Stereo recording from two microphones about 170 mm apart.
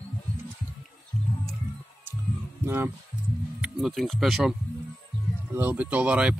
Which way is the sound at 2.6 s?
15° right (ahead or behind).